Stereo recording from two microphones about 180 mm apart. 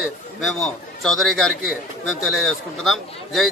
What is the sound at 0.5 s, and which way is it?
A man's voice, centre (ahead or behind).